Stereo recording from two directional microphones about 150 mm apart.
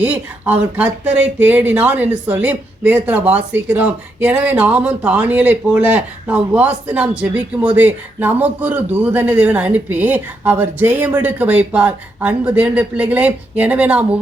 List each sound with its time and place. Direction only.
0.0 s speech: 10° right (ahead or behind)